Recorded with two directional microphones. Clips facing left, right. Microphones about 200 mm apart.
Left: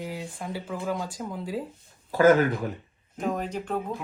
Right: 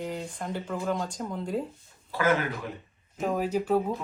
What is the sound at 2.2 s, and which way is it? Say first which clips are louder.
Speech: left 7 dB; 40° left (ahead or behind).